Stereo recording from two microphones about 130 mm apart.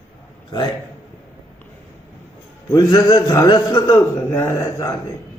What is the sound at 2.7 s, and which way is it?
A man's voice, 30° left (ahead or behind).